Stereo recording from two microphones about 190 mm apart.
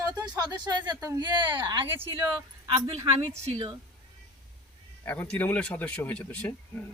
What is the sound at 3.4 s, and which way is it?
Speech, 25° right (ahead or behind).